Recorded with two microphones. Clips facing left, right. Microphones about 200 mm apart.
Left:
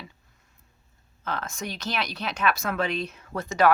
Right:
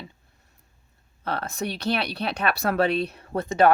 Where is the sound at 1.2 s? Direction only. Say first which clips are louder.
Right 4 dB; 35° right (ahead or behind).